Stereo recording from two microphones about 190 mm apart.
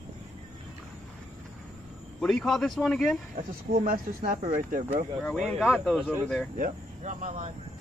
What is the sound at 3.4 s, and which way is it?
Speech, 50° right (ahead or behind).